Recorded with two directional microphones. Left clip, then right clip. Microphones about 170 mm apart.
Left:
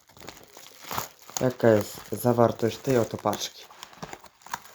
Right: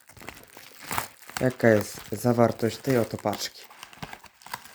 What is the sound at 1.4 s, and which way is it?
Speech, 15° right (ahead or behind).